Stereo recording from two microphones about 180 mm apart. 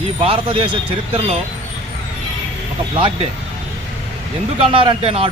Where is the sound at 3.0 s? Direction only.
25° right (ahead or behind).